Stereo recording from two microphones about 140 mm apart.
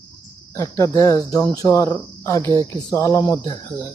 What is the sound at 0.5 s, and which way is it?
Speech, 20° left (ahead or behind).